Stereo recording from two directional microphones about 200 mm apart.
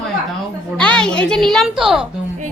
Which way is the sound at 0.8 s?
5° left (ahead or behind).